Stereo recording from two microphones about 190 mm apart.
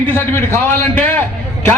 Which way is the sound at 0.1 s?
10° left (ahead or behind).